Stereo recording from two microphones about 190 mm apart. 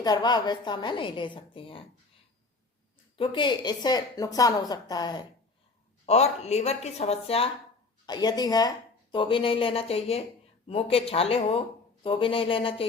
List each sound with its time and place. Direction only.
0.0 s a woman's voice: 20° left (ahead or behind)
3.2 s a woman's voice: 25° left (ahead or behind)
6.1 s a woman's voice: 35° left (ahead or behind)